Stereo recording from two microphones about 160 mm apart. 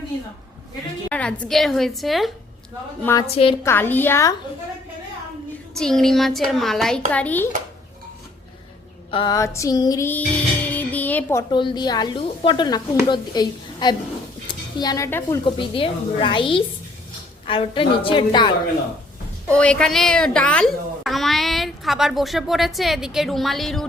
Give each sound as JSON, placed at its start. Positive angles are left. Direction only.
{"t": 1.1, "sound": "a child's voice", "side_deg": 5}
{"t": 3.2, "sound": "a woman's voice", "side_deg": 40}
{"t": 3.6, "sound": "a woman's voice", "side_deg": 15}
{"t": 5.7, "sound": "a child's voice", "side_deg": 5}
{"t": 9.0, "sound": "a sound", "side_deg": 30}
{"t": 9.3, "sound": "speech", "side_deg": 20}
{"t": 10.1, "sound": "music", "side_deg": 10}
{"t": 11.5, "sound": "a woman's voice", "side_deg": 30}
{"t": 15.4, "sound": "a woman's voice", "side_deg": 30}
{"t": 19.5, "sound": "a child's voice", "side_deg": 5}